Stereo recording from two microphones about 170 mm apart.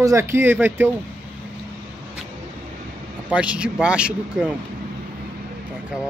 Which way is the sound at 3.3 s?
5° right (ahead or behind).